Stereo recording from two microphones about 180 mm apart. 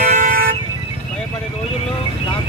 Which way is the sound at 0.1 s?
45° right (ahead or behind).